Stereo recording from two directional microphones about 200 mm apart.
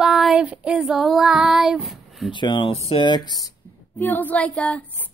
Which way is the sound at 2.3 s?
25° left (ahead or behind).